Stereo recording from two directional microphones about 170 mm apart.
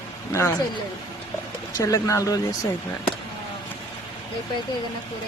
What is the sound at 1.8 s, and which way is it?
Speech, 20° left (ahead or behind).